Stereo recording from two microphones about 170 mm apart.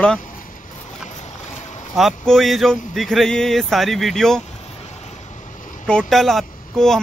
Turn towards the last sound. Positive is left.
turn(degrees=0)  # may be behind; listen again after turning